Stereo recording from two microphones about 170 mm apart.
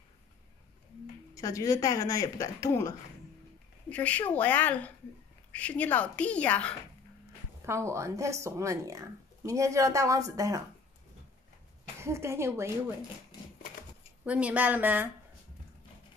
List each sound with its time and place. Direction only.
1.3 s speech: 20° left (ahead or behind)
3.9 s a woman's voice: 10° left (ahead or behind)
7.6 s speech: 15° right (ahead or behind)
12.0 s speech: 15° right (ahead or behind)
14.2 s speech: 5° right (ahead or behind)